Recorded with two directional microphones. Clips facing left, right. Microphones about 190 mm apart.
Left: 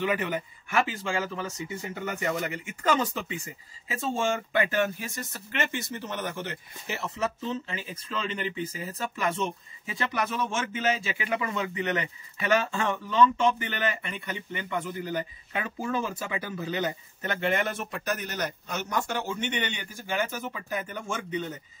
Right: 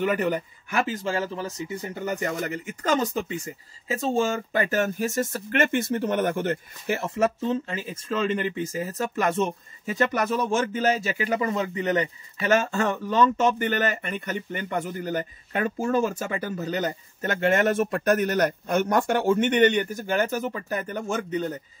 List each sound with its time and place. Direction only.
0.0 s speech: 45° right (ahead or behind)